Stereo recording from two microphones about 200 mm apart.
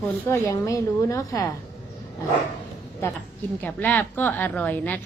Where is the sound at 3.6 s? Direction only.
10° left (ahead or behind).